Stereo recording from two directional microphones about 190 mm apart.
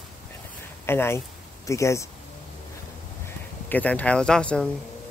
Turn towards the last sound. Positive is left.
turn(degrees=5)  # may be behind; listen again after turning